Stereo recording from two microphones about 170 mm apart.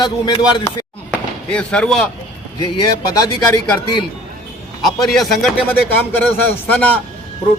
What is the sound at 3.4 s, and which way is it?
Speech, 20° left (ahead or behind).